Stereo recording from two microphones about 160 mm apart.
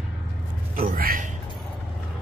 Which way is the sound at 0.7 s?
65° right (ahead or behind).